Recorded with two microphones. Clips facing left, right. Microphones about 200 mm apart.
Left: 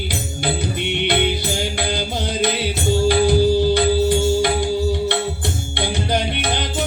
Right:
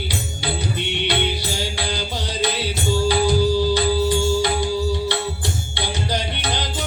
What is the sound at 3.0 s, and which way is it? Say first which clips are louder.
Music: left 3 dB; 55° left (ahead or behind).